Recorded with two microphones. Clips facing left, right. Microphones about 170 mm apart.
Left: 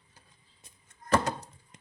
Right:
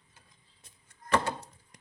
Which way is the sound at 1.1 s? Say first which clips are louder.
Left 2 dB; 40° left (ahead or behind).